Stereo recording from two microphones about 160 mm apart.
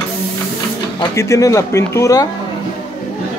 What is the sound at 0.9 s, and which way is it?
Speech, 20° left (ahead or behind).